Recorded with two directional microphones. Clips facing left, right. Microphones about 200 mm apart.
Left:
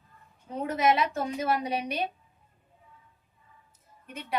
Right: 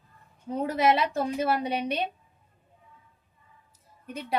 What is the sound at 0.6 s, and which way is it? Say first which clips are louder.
A woman's voice: right 1 dB; 30° right (ahead or behind).